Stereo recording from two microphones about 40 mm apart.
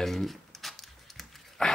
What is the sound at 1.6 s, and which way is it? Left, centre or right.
Dog, left.